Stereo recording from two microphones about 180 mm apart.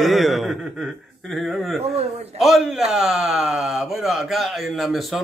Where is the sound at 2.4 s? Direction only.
Centre (ahead or behind).